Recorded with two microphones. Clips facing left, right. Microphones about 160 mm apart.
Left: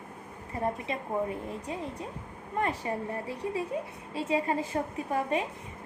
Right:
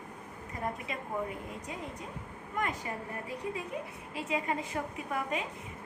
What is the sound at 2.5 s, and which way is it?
A woman's voice, 30° left (ahead or behind).